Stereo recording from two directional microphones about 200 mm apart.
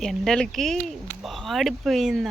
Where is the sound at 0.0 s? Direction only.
Centre (ahead or behind).